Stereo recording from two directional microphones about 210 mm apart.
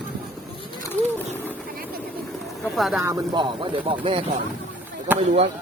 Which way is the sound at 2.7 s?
Centre (ahead or behind).